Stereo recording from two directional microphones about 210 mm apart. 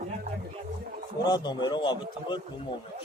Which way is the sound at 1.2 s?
20° left (ahead or behind).